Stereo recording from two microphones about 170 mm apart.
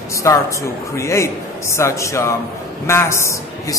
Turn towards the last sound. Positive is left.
turn(degrees=15)  # may be behind; listen again after turning